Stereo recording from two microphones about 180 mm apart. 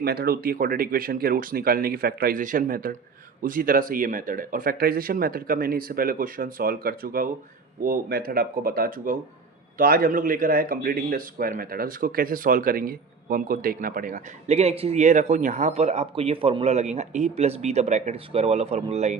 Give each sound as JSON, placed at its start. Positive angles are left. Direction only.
{"t": 0.0, "sound": "speech", "side_deg": -60}